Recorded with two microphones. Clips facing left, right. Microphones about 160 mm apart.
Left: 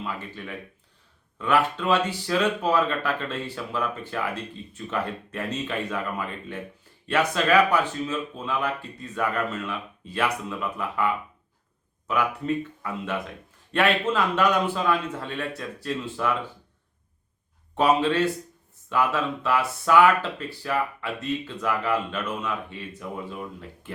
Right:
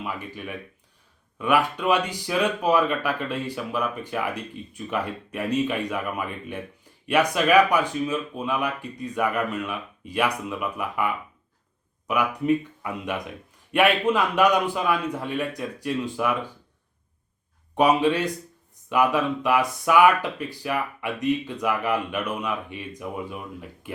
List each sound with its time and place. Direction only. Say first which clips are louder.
0.0 s speech: right 1 dB; 15° right (ahead or behind)
17.7 s speech: right 1 dB; 15° right (ahead or behind)